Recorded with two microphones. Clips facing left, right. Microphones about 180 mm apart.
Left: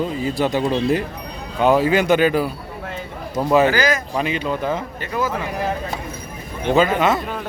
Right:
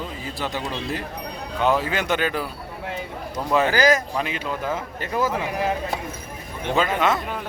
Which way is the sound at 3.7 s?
40° right (ahead or behind).